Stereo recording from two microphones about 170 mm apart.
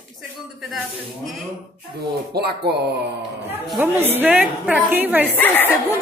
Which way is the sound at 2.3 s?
70° right (ahead or behind).